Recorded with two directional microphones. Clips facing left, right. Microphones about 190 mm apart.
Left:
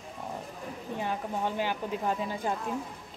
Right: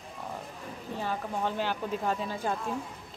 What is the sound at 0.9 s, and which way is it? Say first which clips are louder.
Speech: even; 15° left (ahead or behind).